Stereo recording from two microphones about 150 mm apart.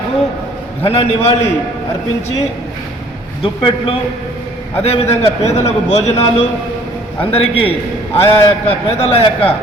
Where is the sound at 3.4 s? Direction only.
35° left (ahead or behind).